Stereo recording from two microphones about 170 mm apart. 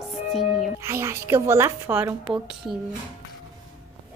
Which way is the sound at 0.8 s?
15° right (ahead or behind).